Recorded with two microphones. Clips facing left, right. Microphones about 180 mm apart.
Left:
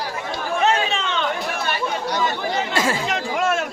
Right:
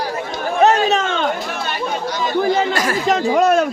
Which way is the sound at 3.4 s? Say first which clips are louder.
Right 7 dB; 40° right (ahead or behind).